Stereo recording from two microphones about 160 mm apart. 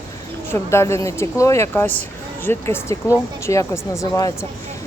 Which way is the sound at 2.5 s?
15° left (ahead or behind).